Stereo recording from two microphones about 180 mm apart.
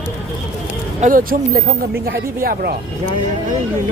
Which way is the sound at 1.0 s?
50° right (ahead or behind).